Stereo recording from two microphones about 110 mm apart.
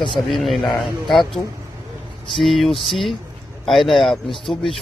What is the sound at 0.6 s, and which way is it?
Speech, 45° left (ahead or behind).